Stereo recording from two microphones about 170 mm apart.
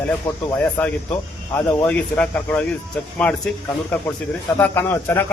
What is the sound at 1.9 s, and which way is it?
Speech, 10° left (ahead or behind).